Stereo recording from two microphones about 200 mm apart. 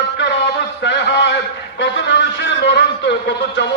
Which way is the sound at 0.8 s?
60° left (ahead or behind).